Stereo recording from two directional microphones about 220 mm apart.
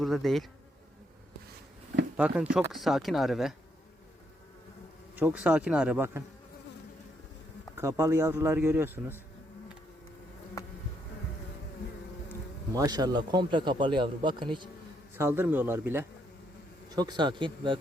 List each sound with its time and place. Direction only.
0.0 s speech: centre (ahead or behind)
2.1 s speech: 5° right (ahead or behind)
5.1 s speech: 5° right (ahead or behind)
7.8 s speech: 15° right (ahead or behind)
12.7 s a man's voice: 15° right (ahead or behind)
15.1 s a man's voice: 10° right (ahead or behind)